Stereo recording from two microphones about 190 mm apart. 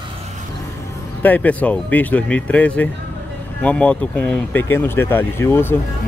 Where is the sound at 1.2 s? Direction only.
10° left (ahead or behind).